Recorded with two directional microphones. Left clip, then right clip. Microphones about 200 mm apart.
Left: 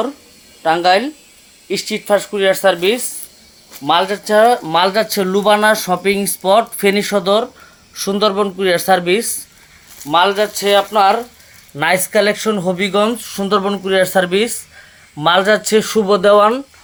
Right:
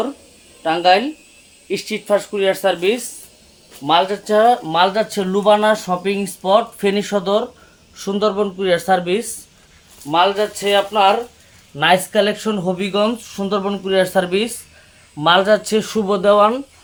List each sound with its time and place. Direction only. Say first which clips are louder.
0.6 s speech: left 1 dB; 15° left (ahead or behind)